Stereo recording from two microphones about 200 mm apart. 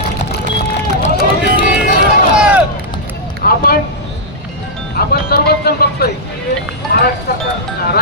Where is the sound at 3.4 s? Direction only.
50° left (ahead or behind).